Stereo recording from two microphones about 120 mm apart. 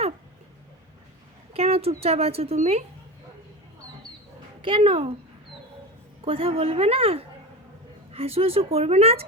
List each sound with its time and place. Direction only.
1.5 s a sound: 55° right (ahead or behind)
2.0 s speech: 55° right (ahead or behind)
4.6 s a woman's voice: 45° right (ahead or behind)
6.2 s a woman's voice: 50° right (ahead or behind)